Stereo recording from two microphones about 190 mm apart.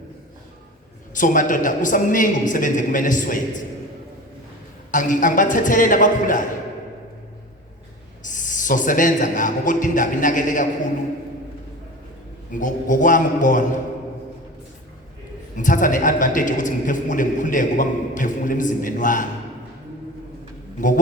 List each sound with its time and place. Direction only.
1.1 s a man's voice: 45° left (ahead or behind)
4.9 s a man's voice: 45° left (ahead or behind)
8.2 s a man's voice: 40° left (ahead or behind)
12.5 s a man's voice: 45° left (ahead or behind)
15.5 s a man's voice: 45° left (ahead or behind)